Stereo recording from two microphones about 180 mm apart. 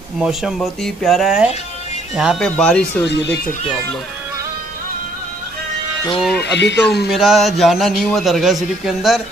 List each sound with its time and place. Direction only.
0.2 s a man's voice: centre (ahead or behind)
3.1 s speech: 70° left (ahead or behind)
6.3 s speech: 70° left (ahead or behind)
7.1 s a man's voice: centre (ahead or behind)